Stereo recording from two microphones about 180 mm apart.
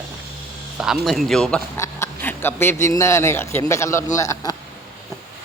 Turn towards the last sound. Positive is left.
turn(degrees=15)  # may be behind; listen again after turning